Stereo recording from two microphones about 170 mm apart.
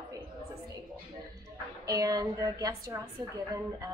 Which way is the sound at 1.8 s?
20° right (ahead or behind).